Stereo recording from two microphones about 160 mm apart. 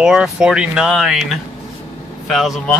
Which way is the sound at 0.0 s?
5° right (ahead or behind).